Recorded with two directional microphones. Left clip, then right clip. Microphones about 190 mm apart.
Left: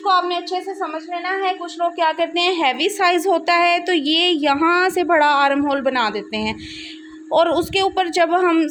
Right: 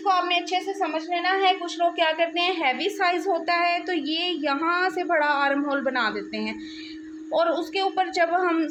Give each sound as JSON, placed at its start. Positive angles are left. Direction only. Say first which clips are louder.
{"t": 0.8, "sound": "a woman's voice", "louder": "left 1 dB", "side_deg": 10}
{"t": 2.0, "sound": "a woman's voice", "louder": "left 7 dB", "side_deg": 35}